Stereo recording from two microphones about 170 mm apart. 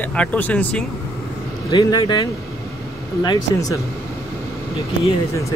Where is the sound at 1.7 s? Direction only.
25° left (ahead or behind).